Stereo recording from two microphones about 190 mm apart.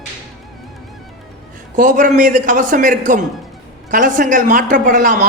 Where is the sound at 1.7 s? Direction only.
45° right (ahead or behind).